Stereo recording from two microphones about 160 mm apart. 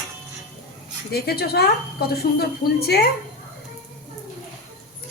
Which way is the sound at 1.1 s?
80° left.